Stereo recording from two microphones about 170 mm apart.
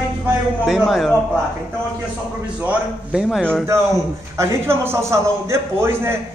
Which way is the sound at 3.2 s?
5° left (ahead or behind).